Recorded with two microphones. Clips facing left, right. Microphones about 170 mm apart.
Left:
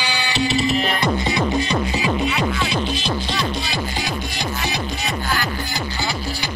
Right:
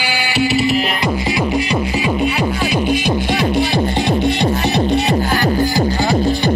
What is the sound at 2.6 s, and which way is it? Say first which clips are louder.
Music: right 7 dB; 10° right (ahead or behind).